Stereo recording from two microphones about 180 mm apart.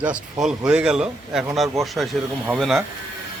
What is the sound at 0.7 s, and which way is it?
A man's voice, 5° right (ahead or behind).